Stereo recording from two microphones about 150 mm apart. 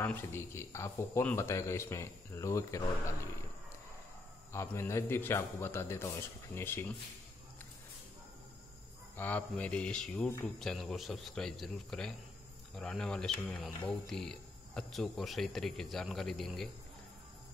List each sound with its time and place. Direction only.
0.0 s speech: 15° left (ahead or behind)
4.5 s a man's voice: 20° left (ahead or behind)
9.1 s a man's voice: 10° left (ahead or behind)